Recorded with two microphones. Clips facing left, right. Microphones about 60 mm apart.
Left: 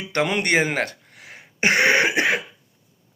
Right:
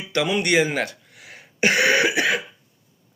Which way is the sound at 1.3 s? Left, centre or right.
Left.